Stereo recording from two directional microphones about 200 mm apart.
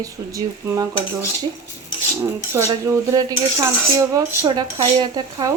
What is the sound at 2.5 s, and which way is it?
Speech, 15° right (ahead or behind).